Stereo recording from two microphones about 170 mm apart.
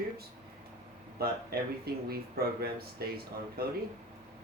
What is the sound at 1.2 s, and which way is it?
Speech, 65° right (ahead or behind).